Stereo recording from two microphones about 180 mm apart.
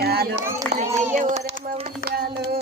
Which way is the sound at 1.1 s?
45° right (ahead or behind).